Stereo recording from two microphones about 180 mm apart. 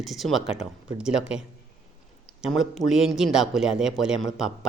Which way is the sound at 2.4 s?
Centre (ahead or behind).